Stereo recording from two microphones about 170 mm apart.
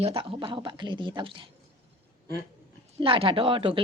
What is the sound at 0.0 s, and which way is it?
Speech, 30° right (ahead or behind).